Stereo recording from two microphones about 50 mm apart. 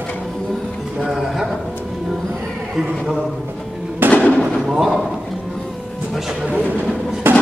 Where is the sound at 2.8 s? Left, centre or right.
Centre.